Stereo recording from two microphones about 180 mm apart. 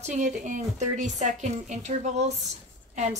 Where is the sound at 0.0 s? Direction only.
40° right (ahead or behind).